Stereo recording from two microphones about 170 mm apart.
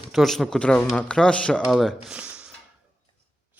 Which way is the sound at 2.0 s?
5° right (ahead or behind).